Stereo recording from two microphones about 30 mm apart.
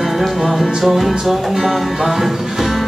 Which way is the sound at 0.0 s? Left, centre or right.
Centre.